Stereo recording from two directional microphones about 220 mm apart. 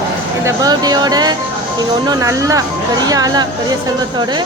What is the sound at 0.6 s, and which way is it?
Speech, 15° right (ahead or behind).